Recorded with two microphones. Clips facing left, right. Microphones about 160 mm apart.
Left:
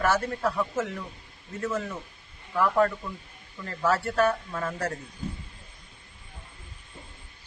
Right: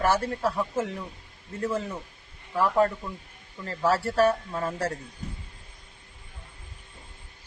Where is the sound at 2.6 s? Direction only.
30° right (ahead or behind).